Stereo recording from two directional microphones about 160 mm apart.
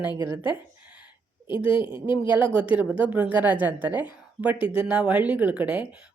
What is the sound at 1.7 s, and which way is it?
Speech, 10° right (ahead or behind).